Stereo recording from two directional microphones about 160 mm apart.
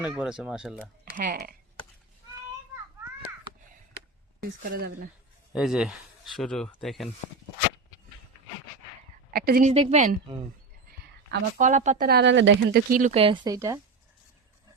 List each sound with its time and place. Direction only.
0.0 s speech: 5° right (ahead or behind)
1.1 s speech: 60° right (ahead or behind)
4.7 s speech: 65° right (ahead or behind)
5.5 s speech: 5° right (ahead or behind)
9.3 s a sound: 70° right (ahead or behind)
9.6 s speech: 45° right (ahead or behind)
11.6 s speech: 50° right (ahead or behind)
12.0 s speech: 85° right
13.0 s speech: 40° right (ahead or behind); by 13.7 s 20° right (ahead or behind)